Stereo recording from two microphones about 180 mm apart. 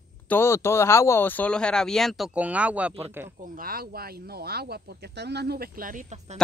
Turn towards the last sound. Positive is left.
turn(degrees=-45)  # may be behind; listen again after turning